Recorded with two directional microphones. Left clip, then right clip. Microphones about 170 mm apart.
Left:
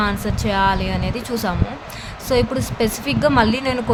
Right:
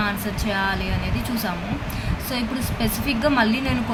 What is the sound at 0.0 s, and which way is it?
Speech, 55° left (ahead or behind).